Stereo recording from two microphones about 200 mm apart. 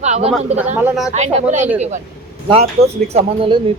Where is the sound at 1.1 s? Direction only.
35° right (ahead or behind).